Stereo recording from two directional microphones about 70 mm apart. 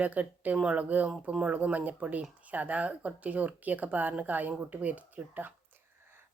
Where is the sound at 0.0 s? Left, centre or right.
Right.